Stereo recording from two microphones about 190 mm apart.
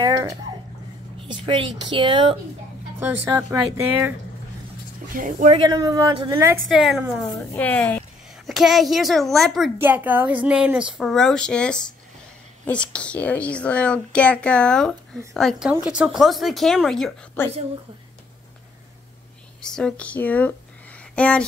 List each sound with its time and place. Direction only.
0.0 s speech: 20° right (ahead or behind)
3.0 s speech: 10° right (ahead or behind)
5.1 s speech: 45° right (ahead or behind)
5.5 s speech: 20° right (ahead or behind)
6.7 s speech: centre (ahead or behind)
7.2 s a woman's voice: 15° left (ahead or behind)
9.8 s a woman's voice: 10° right (ahead or behind); by 17.5 s 10° left (ahead or behind)
19.6 s a woman's voice: 5° left (ahead or behind)